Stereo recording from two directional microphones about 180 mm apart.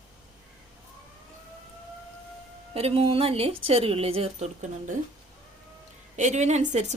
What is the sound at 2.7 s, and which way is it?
Speech, 35° right (ahead or behind).